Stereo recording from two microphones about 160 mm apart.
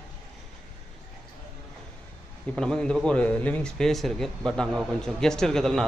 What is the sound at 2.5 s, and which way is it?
A man's voice, 5° left (ahead or behind).